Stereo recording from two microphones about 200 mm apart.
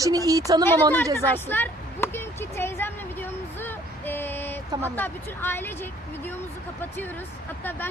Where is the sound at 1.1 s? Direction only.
10° left (ahead or behind).